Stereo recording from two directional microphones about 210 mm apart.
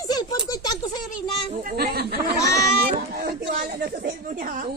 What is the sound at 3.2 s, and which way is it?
Speech, 45° right (ahead or behind).